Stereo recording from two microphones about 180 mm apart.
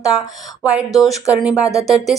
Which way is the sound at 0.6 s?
Centre (ahead or behind).